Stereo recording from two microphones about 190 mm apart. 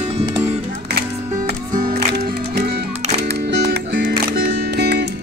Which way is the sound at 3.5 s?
60° right (ahead or behind).